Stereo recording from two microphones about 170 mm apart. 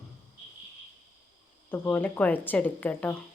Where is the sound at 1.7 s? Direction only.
10° left (ahead or behind).